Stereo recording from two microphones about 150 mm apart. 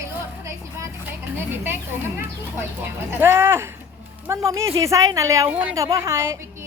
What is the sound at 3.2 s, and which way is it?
A woman's voice, 15° right (ahead or behind).